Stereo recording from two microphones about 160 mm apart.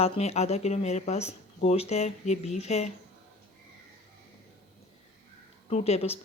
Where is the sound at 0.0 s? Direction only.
40° left (ahead or behind).